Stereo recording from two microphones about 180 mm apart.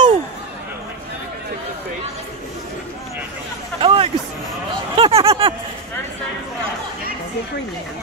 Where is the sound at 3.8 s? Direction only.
30° right (ahead or behind).